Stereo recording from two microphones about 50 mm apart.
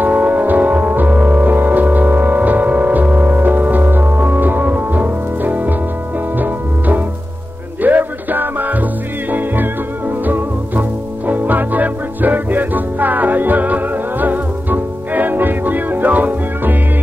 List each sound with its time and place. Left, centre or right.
0.0 s music: right